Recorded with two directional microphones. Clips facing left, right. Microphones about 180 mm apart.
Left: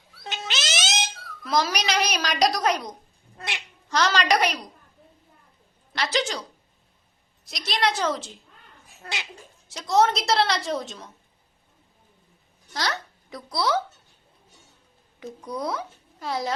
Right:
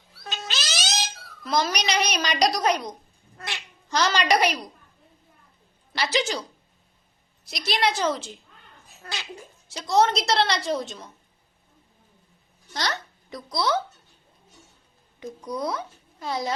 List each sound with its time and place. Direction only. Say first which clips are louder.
0.3 s cat: left 2 dB; 20° left (ahead or behind)
1.5 s a woman's voice: even; centre (ahead or behind)
3.3 s speech: left 1 dB; 20° left (ahead or behind)
3.8 s a woman's voice: even; centre (ahead or behind)
5.9 s a woman's voice: right 1 dB; 5° right (ahead or behind)
7.4 s a woman's voice: right 1 dB; centre (ahead or behind)
9.6 s a woman's voice: even; centre (ahead or behind)
12.7 s a child's voice: even; centre (ahead or behind)
15.2 s a woman's voice: right 1 dB; 5° left (ahead or behind)